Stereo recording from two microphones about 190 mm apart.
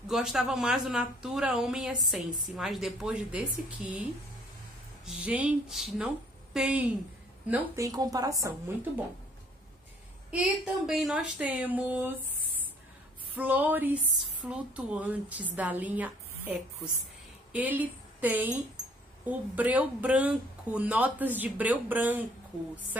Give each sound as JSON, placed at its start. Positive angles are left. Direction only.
{"t": 0.1, "sound": "a woman's voice", "side_deg": 0}
{"t": 5.0, "sound": "a woman's voice", "side_deg": -5}
{"t": 10.3, "sound": "speech", "side_deg": -5}
{"t": 13.4, "sound": "speech", "side_deg": -10}